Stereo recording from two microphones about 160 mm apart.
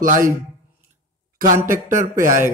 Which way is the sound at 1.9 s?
55° right (ahead or behind).